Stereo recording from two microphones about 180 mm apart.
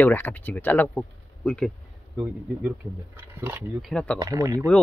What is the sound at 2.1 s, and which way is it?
Speech, 10° right (ahead or behind).